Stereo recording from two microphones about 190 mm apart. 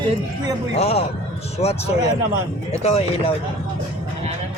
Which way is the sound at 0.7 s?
35° left (ahead or behind).